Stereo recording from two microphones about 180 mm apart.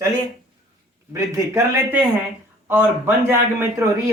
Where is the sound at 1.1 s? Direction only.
15° right (ahead or behind).